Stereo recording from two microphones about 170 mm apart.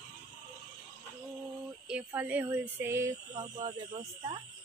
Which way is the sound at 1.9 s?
10° right (ahead or behind).